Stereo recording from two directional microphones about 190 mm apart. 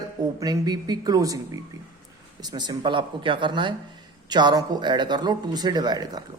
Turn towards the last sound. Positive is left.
turn(degrees=-20)  # may be behind; listen again after turning